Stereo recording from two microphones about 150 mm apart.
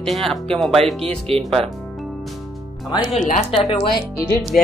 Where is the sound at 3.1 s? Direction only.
55° left (ahead or behind).